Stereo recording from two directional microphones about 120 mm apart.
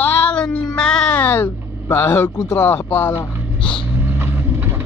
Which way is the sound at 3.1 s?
50° left (ahead or behind).